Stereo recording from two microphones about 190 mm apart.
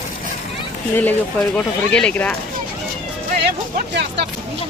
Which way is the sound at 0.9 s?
10° left (ahead or behind).